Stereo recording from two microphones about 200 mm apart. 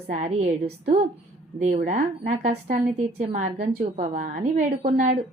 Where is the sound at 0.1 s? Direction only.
35° right (ahead or behind).